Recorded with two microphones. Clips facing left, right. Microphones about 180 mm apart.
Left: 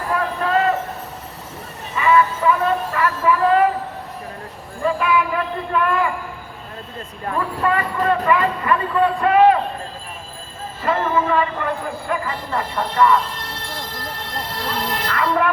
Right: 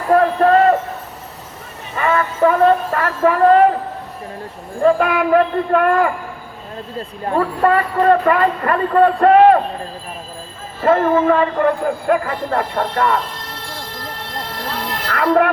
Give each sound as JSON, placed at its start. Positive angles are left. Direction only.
{"t": 0.1, "sound": "a sound", "side_deg": -45}
{"t": 2.0, "sound": "music", "side_deg": -50}
{"t": 4.8, "sound": "speech", "side_deg": -50}
{"t": 7.6, "sound": "speech", "side_deg": -45}
{"t": 10.8, "sound": "speech", "side_deg": -50}
{"t": 15.0, "sound": "speech", "side_deg": -60}